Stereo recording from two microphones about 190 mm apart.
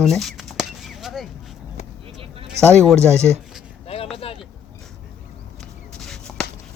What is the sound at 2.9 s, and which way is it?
Speech, 15° right (ahead or behind).